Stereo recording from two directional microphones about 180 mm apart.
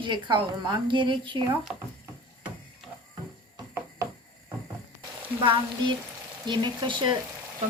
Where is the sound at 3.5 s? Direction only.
15° right (ahead or behind).